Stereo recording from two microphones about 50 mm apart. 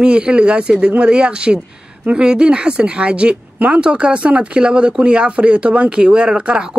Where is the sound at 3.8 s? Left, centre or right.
Right.